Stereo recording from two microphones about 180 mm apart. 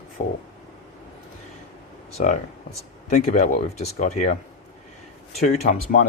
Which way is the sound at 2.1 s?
45° left (ahead or behind).